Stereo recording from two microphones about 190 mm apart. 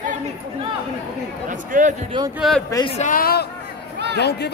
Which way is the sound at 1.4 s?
45° right (ahead or behind).